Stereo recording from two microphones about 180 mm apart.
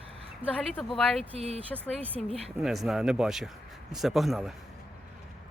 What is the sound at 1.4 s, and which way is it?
Speech, 35° right (ahead or behind).